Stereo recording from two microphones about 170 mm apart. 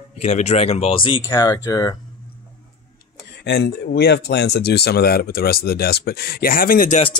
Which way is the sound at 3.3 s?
80° left.